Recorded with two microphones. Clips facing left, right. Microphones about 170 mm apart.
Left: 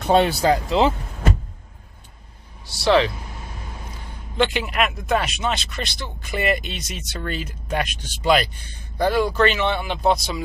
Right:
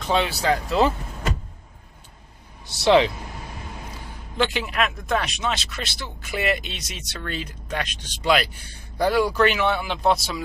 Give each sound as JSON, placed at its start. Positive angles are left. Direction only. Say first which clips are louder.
{"t": 0.0, "sound": "speech", "louder": "left 6 dB", "side_deg": 50}
{"t": 0.4, "sound": "speech", "louder": "left 4 dB", "side_deg": 35}
{"t": 2.6, "sound": "speech", "louder": "right 1 dB", "side_deg": -20}
{"t": 4.4, "sound": "speech", "louder": "left 2 dB", "side_deg": 0}
{"t": 8.9, "sound": "speech", "louder": "left 1 dB", "side_deg": -10}